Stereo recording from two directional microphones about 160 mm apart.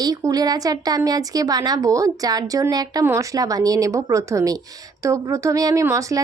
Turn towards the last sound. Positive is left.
turn(degrees=-20)  # may be behind; listen again after turning